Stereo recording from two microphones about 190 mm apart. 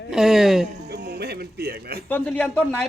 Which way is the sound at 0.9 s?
60° right (ahead or behind).